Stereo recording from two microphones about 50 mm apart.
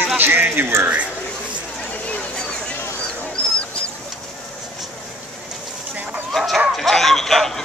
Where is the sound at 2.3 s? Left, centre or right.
Centre.